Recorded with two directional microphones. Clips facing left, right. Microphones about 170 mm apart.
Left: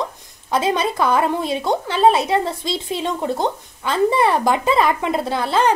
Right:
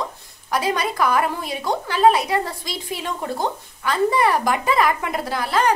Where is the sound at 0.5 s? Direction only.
25° left (ahead or behind).